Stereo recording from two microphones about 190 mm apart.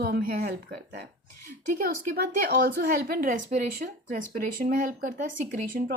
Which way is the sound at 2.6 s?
55° right (ahead or behind).